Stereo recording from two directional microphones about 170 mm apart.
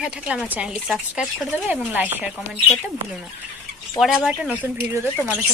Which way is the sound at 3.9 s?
Centre (ahead or behind).